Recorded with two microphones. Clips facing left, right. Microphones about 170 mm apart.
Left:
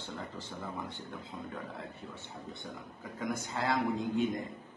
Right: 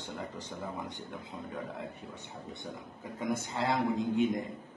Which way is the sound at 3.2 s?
25° right (ahead or behind).